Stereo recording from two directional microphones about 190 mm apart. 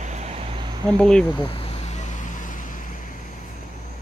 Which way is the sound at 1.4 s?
30° left (ahead or behind).